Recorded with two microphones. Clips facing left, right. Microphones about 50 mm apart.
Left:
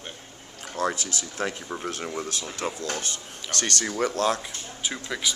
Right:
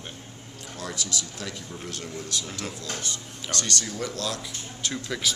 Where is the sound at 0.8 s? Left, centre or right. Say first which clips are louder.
Left 6 dB; left.